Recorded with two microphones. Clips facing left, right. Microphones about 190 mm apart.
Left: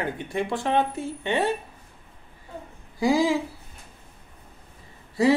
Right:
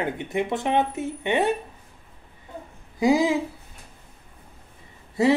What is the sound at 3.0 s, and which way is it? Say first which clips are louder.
Speech: right 1 dB; 20° right (ahead or behind).